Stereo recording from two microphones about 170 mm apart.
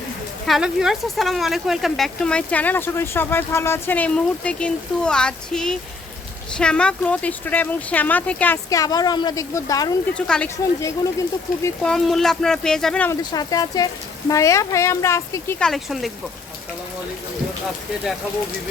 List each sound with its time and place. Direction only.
0.4 s speech: centre (ahead or behind)
8.7 s a woman's voice: 20° left (ahead or behind)
10.2 s speech: 5° left (ahead or behind)
10.8 s a woman's voice: 20° left (ahead or behind)
11.8 s speech: 5° left (ahead or behind)
13.3 s a woman's voice: 20° left (ahead or behind)
15.5 s speech: centre (ahead or behind)